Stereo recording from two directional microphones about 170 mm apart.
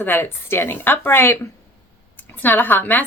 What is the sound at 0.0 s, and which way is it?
A woman's voice, 10° left (ahead or behind).